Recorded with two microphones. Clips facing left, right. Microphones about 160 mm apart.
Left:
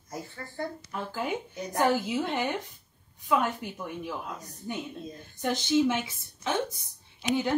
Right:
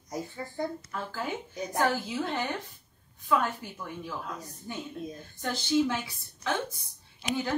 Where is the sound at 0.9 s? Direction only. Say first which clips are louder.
Left 2 dB; 15° left (ahead or behind).